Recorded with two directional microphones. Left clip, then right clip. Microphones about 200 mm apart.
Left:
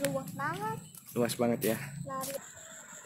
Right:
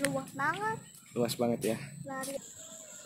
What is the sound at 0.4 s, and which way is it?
Speech, 30° right (ahead or behind).